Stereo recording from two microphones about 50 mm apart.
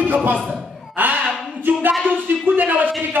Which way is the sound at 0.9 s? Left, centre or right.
Right.